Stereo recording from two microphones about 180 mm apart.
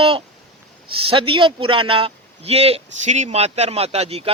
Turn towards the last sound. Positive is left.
turn(degrees=-35)  # may be behind; listen again after turning